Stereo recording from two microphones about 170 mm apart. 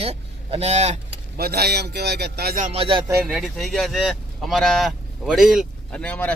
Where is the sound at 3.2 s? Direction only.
Centre (ahead or behind).